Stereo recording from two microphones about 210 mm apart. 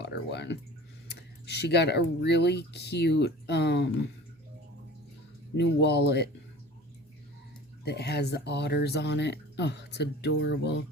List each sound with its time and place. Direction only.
0.0 s speech: 55° left (ahead or behind)
5.5 s speech: 55° left (ahead or behind)
7.9 s speech: 50° left (ahead or behind)